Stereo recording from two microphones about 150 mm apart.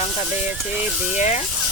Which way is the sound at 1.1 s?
50° left (ahead or behind).